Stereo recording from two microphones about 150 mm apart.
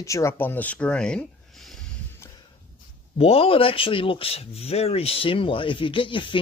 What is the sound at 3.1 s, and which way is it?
Speech, 40° left (ahead or behind).